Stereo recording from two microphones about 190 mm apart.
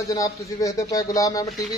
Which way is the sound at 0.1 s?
20° left (ahead or behind).